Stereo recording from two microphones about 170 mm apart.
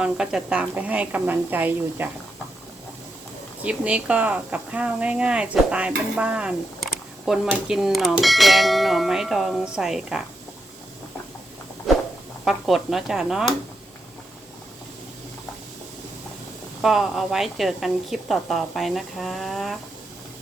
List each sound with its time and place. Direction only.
0.0 s a woman's voice: 5° right (ahead or behind)
3.6 s speech: 5° right (ahead or behind)
11.9 s a sound: centre (ahead or behind)
12.5 s speech: centre (ahead or behind)
16.8 s speech: centre (ahead or behind)